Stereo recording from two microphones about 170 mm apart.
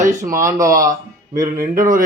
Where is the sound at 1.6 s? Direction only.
55° right (ahead or behind).